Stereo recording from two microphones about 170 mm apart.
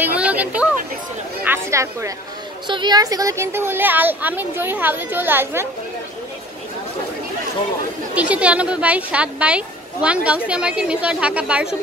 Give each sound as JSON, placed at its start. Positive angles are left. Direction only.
{"t": 0.0, "sound": "speech", "side_deg": -10}
{"t": 8.1, "sound": "speech", "side_deg": -5}